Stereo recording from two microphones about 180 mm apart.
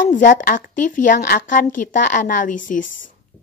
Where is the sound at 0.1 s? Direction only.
45° left (ahead or behind).